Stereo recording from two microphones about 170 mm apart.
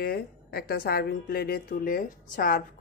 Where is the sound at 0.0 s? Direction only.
65° left (ahead or behind).